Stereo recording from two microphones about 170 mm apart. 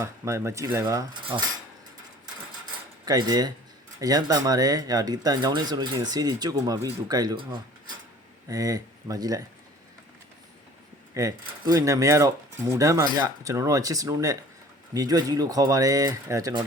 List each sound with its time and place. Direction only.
0.0 s speech: 15° right (ahead or behind)
3.1 s speech: 25° right (ahead or behind)
11.1 s speech: 20° right (ahead or behind)